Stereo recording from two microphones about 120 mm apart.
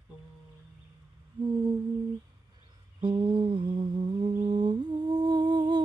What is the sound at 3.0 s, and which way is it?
Humming, 40° right (ahead or behind).